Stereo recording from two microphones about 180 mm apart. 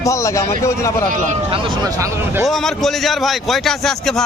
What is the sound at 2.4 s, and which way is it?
A man's voice, centre (ahead or behind).